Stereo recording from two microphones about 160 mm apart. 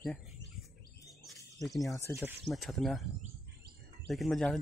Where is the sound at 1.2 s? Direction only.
Centre (ahead or behind).